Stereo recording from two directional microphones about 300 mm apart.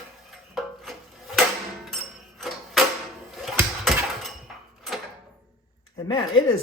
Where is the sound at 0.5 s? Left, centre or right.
Centre.